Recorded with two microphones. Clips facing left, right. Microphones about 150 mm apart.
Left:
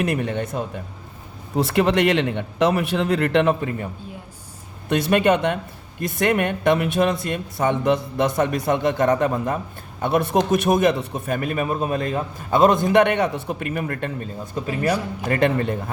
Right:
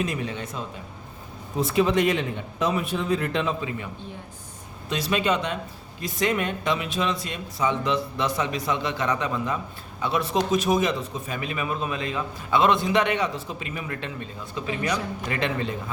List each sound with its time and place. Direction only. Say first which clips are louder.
0.0 s speech: left 6 dB; 60° left (ahead or behind)
1.5 s speech: left 3 dB; 65° left (ahead or behind)
4.9 s a man's voice: left 7 dB; 60° left (ahead or behind)